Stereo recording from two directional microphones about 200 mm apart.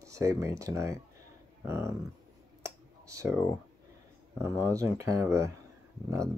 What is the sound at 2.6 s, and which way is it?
Clicking, 15° right (ahead or behind).